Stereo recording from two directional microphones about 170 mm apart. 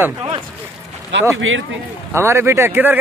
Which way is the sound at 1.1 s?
90° right.